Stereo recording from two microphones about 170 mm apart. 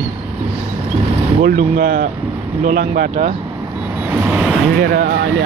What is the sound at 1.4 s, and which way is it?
Speech, 60° right (ahead or behind).